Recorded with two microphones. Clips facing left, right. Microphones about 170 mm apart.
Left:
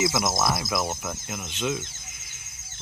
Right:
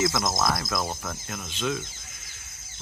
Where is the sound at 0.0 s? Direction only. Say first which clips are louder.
Left 1 dB; 15° left (ahead or behind).